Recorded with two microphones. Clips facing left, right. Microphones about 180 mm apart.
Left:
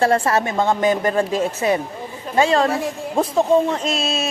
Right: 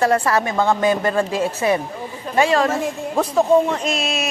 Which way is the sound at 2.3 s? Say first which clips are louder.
Even; 25° left (ahead or behind).